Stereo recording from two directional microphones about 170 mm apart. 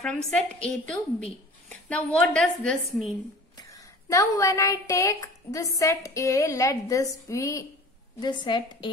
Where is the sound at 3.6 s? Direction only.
20° left (ahead or behind).